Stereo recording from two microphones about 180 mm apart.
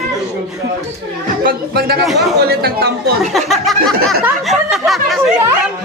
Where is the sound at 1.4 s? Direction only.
55° right (ahead or behind).